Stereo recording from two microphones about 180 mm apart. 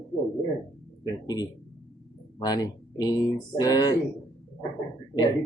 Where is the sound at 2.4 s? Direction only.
20° left (ahead or behind).